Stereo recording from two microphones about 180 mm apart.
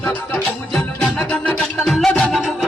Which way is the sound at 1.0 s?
5° left (ahead or behind).